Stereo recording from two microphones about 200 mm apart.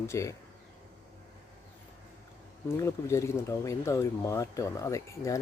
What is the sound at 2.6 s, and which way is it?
Speech, 15° left (ahead or behind).